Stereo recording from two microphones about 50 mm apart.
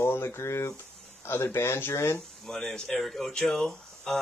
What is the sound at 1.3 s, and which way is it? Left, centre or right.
Speech, left.